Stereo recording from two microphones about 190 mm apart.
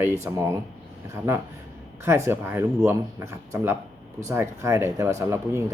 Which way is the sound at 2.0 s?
15° right (ahead or behind).